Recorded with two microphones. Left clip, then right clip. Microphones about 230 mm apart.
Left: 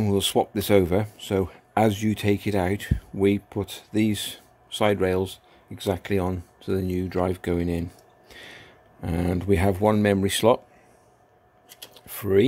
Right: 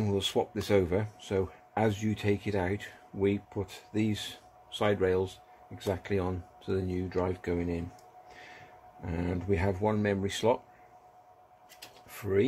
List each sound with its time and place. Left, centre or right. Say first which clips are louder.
0.0 s speech: left 7 dB; left
9.0 s speech: left 8 dB; left
12.2 s speech: left 8 dB; left